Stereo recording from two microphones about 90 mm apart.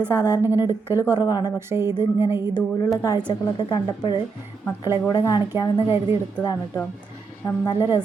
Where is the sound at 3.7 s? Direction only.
60° left (ahead or behind).